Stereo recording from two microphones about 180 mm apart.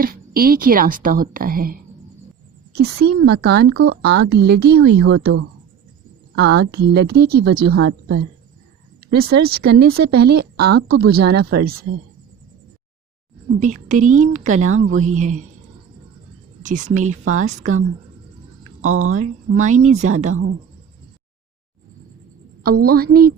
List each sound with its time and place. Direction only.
0.0 s a woman's voice: 55° right (ahead or behind)
2.7 s speech: 65° right (ahead or behind)
6.3 s speech: 65° right (ahead or behind)
13.6 s a woman's voice: 45° right (ahead or behind)
16.6 s a woman's voice: 45° right (ahead or behind)
18.8 s speech: 45° right (ahead or behind)
22.6 s speech: 60° right (ahead or behind)